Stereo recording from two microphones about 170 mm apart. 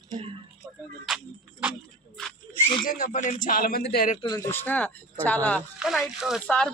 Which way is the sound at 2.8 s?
55° left (ahead or behind).